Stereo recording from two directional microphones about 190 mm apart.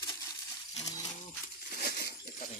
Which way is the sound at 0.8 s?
20° left (ahead or behind).